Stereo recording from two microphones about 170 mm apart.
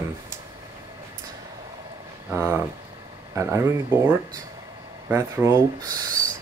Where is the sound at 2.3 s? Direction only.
15° right (ahead or behind).